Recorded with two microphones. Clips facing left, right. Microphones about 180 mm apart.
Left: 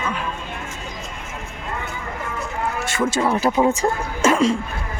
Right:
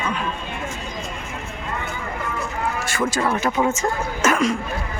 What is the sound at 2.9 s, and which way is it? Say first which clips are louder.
Speech: left 3 dB; 25° left (ahead or behind).